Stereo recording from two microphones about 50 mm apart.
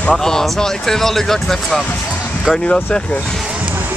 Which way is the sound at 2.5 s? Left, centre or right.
Centre.